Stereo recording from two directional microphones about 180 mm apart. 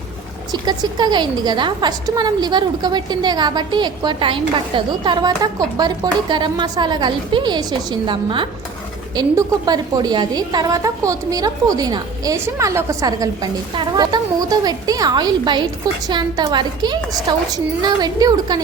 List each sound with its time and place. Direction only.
0.5 s a woman's voice: 25° right (ahead or behind)